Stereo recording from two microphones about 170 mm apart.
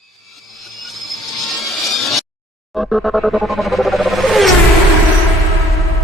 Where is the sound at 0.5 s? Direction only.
Centre (ahead or behind).